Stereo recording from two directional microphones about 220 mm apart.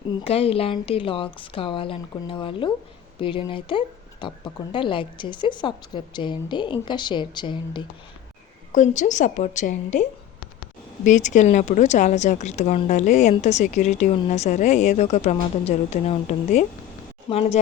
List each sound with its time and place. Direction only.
0.3 s speech: 25° left (ahead or behind)
8.7 s a woman's voice: 35° left (ahead or behind)